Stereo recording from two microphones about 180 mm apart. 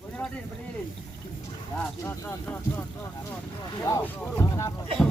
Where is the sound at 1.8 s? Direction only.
15° left (ahead or behind).